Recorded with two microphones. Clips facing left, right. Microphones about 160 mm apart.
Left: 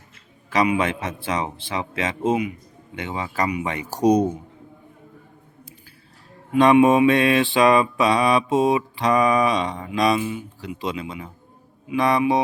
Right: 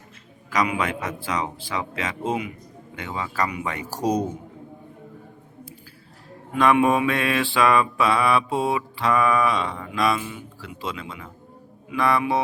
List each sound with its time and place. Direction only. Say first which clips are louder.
0.5 s mantra: left 4 dB; 25° left (ahead or behind)
6.5 s mantra: left 4 dB; 20° left (ahead or behind)
11.9 s speech: left 3 dB; 20° left (ahead or behind)